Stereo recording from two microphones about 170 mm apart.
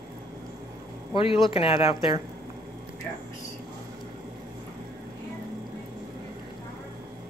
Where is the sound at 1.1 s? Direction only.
30° left (ahead or behind).